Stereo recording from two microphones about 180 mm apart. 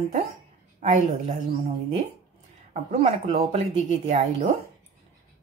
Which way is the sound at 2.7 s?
40° right (ahead or behind).